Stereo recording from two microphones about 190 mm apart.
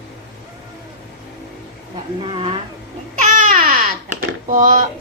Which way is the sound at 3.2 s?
45° right (ahead or behind).